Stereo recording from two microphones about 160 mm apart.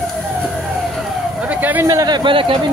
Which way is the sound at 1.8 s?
25° right (ahead or behind).